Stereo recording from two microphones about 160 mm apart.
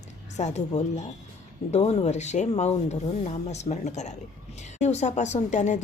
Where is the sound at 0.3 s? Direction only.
45° left (ahead or behind).